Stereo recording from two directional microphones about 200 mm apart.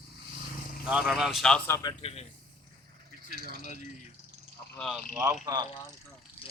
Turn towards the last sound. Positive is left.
turn(degrees=-20)  # may be behind; listen again after turning